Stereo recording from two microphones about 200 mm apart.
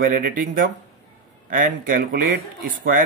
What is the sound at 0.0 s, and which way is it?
Speech, 45° right (ahead or behind).